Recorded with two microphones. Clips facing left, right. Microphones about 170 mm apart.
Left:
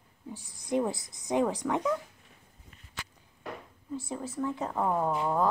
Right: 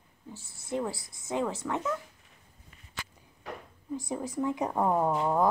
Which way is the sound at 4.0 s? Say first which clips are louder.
Right 2 dB; 15° right (ahead or behind).